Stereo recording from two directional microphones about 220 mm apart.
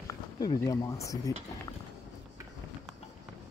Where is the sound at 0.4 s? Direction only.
15° left (ahead or behind).